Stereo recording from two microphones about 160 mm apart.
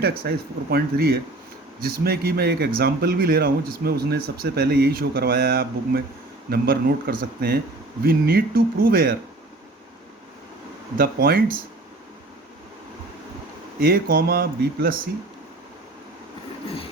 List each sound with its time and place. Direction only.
0.0 s speech: 75° right (ahead or behind)
10.9 s speech: 70° right (ahead or behind)
13.7 s speech: 70° right (ahead or behind)